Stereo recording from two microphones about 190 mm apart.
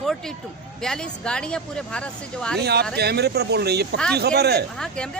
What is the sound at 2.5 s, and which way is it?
Speech, 60° right (ahead or behind).